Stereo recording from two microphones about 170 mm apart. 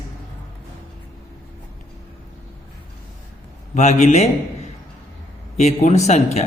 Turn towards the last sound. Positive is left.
turn(degrees=40)  # may be behind; listen again after turning